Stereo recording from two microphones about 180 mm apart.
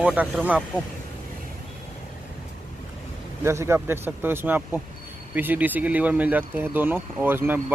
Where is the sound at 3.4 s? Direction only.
15° right (ahead or behind).